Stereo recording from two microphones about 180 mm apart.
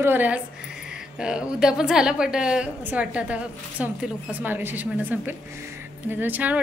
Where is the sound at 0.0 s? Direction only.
10° right (ahead or behind).